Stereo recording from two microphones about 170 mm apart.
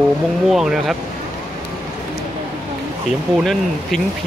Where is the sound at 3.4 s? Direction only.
Centre (ahead or behind).